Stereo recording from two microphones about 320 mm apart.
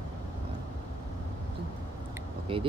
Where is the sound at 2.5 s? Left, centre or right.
Centre.